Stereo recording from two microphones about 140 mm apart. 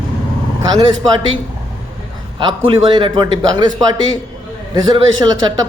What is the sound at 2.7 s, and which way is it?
Speech, 40° right (ahead or behind).